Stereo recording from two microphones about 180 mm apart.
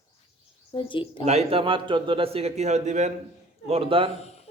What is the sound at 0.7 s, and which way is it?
Speech, 25° left (ahead or behind).